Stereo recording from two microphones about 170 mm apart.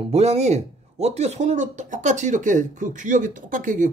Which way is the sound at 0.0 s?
40° right (ahead or behind).